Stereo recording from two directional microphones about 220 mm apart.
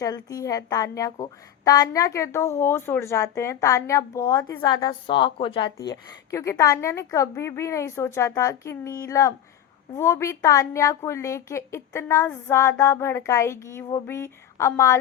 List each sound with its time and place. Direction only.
0.0 s a woman's voice: 15° left (ahead or behind)